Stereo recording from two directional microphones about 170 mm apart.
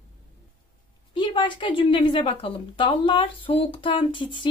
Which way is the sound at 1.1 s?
25° left (ahead or behind).